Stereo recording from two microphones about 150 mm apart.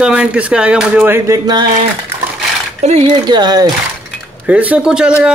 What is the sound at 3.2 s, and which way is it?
Speech, 30° right (ahead or behind).